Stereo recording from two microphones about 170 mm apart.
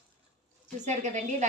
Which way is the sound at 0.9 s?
45° right (ahead or behind).